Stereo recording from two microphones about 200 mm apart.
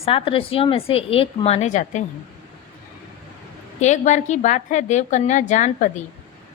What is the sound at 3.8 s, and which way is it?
A woman's voice, 35° left (ahead or behind).